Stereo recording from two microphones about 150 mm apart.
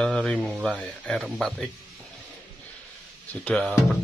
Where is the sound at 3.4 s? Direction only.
5° left (ahead or behind).